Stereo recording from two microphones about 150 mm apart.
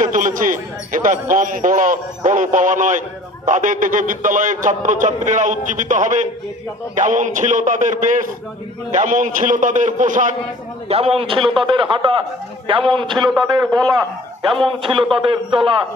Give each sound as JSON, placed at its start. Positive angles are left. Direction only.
{"t": 0.0, "sound": "a man's voice", "side_deg": -60}
{"t": 10.9, "sound": "a man's voice", "side_deg": -40}